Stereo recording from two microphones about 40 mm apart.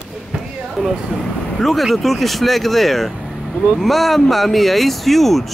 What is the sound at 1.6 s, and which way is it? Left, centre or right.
Speech, centre.